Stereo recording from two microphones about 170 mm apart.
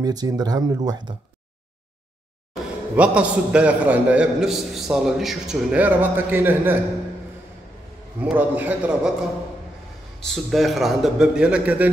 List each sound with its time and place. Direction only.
0.0 s speech: 25° right (ahead or behind)
2.5 s a man's voice: 5° right (ahead or behind)
8.2 s a man's voice: 10° right (ahead or behind)
10.2 s a man's voice: centre (ahead or behind)